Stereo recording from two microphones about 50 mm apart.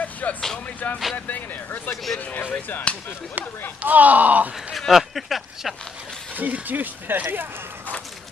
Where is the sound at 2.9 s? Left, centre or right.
Left.